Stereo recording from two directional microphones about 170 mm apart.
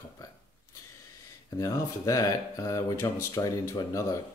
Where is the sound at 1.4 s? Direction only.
20° left (ahead or behind).